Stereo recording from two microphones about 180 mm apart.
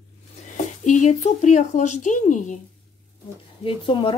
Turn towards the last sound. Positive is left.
turn(degrees=25)  # may be behind; listen again after turning